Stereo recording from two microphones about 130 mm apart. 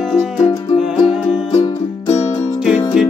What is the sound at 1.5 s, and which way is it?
Music, 40° left (ahead or behind).